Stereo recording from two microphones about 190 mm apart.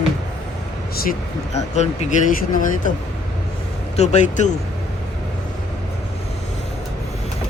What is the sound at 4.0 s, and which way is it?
Speech, 40° left (ahead or behind).